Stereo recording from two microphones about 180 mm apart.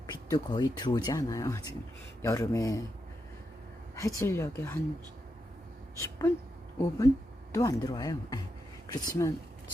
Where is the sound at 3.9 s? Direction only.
15° left (ahead or behind).